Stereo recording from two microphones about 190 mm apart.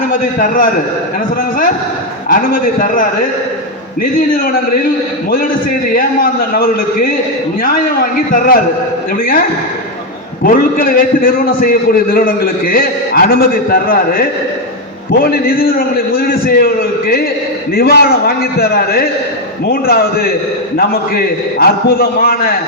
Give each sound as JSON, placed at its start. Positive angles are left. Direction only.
{"t": 0.1, "sound": "a man's voice", "side_deg": 45}
{"t": 2.3, "sound": "a man's voice", "side_deg": 45}
{"t": 5.9, "sound": "a man's voice", "side_deg": 50}
{"t": 10.4, "sound": "a man's voice", "side_deg": 50}